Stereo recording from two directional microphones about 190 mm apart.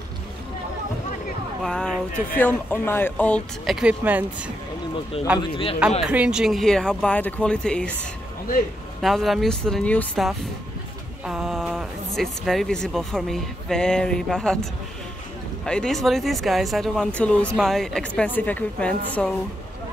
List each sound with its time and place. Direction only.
1.6 s speech: 5° left (ahead or behind)
5.5 s a man's voice: 30° left (ahead or behind)
6.0 s speech: 5° right (ahead or behind)
9.0 s speech: centre (ahead or behind)